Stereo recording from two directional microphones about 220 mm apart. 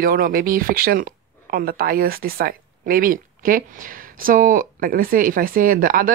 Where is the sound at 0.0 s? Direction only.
40° right (ahead or behind).